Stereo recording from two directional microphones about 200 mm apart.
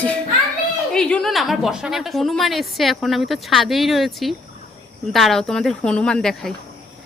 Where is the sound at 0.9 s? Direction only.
5° left (ahead or behind).